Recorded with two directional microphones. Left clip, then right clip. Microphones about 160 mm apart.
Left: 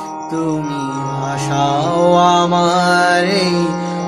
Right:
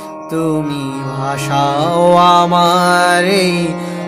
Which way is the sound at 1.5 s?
55° right (ahead or behind).